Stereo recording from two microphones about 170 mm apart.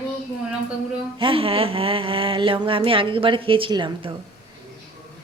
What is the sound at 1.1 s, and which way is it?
Speech, 30° right (ahead or behind).